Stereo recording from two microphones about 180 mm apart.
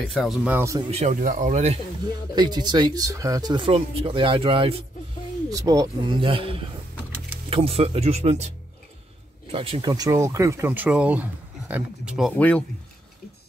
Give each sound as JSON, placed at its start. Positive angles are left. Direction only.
{"t": 0.1, "sound": "speech", "side_deg": 0}
{"t": 0.8, "sound": "speech", "side_deg": -40}
{"t": 2.3, "sound": "speech", "side_deg": -25}
{"t": 5.5, "sound": "speech", "side_deg": -20}